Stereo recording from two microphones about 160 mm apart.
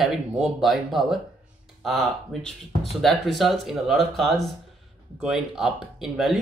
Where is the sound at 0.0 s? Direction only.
Centre (ahead or behind).